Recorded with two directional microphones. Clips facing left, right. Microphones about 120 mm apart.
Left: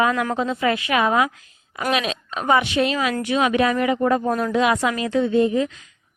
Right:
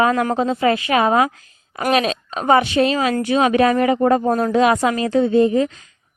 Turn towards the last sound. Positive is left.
turn(degrees=-35)  # may be behind; listen again after turning